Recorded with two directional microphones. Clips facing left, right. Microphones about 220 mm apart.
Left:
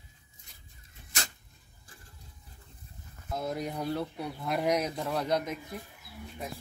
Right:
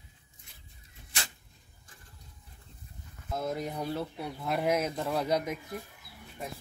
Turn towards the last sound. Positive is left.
turn(degrees=-10)  # may be behind; listen again after turning